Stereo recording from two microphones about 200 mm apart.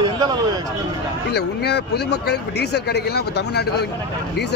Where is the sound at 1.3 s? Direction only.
55° left (ahead or behind).